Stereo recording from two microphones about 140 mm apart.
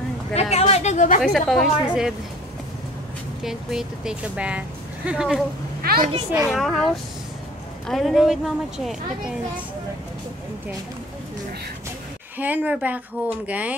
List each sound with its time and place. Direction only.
0.3 s a sound: 50° left (ahead or behind)
1.2 s speech: 5° left (ahead or behind)
3.4 s speech: 5° right (ahead or behind)
5.8 s a sound: 90° right
6.3 s speech: centre (ahead or behind)
12.4 s a woman's voice: 10° right (ahead or behind)